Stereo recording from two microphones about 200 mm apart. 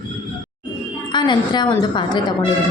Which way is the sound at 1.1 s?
20° left (ahead or behind).